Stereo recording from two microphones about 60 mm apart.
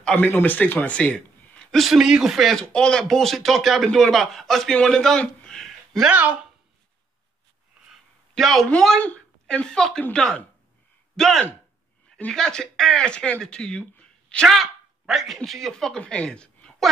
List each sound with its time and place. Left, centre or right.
0.1 s speech: left
0.9 s a sound: centre
1.8 s speech: centre
2.5 s a man's voice: centre
6.0 s speech: right
8.4 s speech: centre
9.0 s a man's voice: left
14.5 s speech: centre
16.0 s speech: centre